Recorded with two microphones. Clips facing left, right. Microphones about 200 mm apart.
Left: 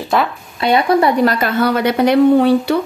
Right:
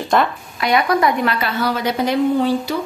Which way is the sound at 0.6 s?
30° left (ahead or behind).